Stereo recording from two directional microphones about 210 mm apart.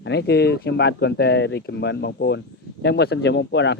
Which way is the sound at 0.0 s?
50° left (ahead or behind).